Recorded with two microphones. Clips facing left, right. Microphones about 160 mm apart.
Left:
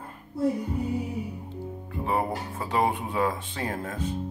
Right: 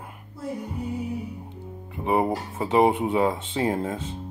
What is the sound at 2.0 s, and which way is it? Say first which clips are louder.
Speech: right 4 dB; 20° right (ahead or behind).